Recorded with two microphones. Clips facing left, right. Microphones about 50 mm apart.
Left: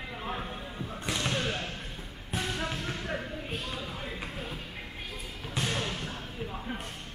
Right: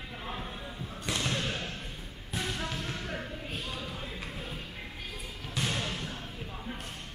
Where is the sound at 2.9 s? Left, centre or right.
Centre.